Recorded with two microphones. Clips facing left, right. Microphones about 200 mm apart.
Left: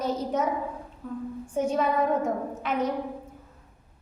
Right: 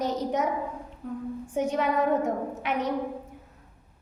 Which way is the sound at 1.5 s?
15° right (ahead or behind).